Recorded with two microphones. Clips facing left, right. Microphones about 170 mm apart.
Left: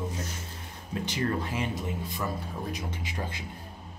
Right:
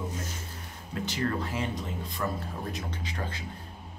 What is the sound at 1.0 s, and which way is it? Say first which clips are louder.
Speech: even; 15° left (ahead or behind).